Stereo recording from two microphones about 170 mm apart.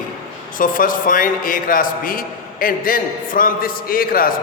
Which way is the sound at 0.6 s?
55° left (ahead or behind).